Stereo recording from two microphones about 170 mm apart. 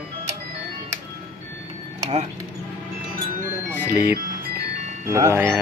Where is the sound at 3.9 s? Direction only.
15° right (ahead or behind).